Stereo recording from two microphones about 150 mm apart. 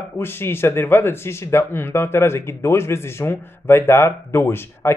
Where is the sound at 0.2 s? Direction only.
15° left (ahead or behind).